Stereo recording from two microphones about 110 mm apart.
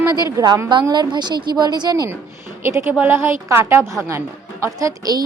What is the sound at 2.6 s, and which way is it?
A woman's voice, 25° right (ahead or behind).